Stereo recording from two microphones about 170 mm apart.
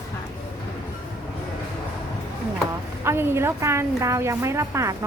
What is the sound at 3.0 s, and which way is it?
A woman's voice, 15° right (ahead or behind).